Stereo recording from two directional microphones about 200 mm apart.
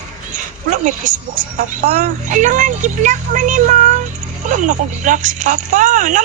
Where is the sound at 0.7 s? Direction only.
40° right (ahead or behind).